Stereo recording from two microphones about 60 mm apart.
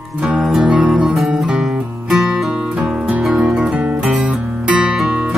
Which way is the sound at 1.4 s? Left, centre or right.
Centre.